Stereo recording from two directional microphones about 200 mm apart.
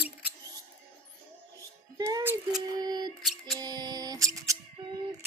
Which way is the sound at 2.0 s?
15° right (ahead or behind).